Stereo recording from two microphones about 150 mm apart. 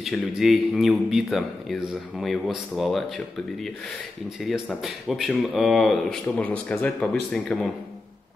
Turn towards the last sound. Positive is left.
turn(degrees=5)  # may be behind; listen again after turning